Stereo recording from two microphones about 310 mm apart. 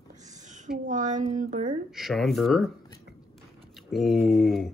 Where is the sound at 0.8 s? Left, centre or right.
Right.